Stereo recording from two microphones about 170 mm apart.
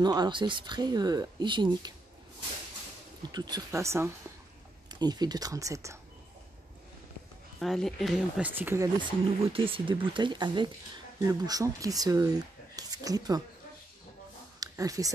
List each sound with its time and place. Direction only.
0.0 s speech: 25° right (ahead or behind)
3.2 s speech: 25° right (ahead or behind)
7.6 s speech: centre (ahead or behind); by 9.1 s 20° right (ahead or behind)
9.5 s speech: 30° right (ahead or behind)
14.6 s speech: 20° right (ahead or behind)